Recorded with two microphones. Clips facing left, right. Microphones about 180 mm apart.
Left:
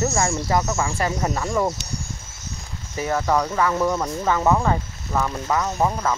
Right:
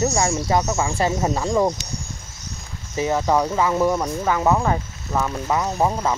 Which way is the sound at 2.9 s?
20° right (ahead or behind).